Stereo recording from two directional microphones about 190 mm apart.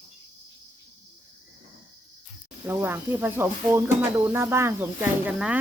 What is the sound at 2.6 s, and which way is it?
Speech, 10° right (ahead or behind).